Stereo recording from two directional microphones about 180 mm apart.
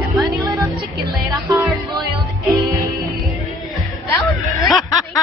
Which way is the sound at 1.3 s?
20° right (ahead or behind).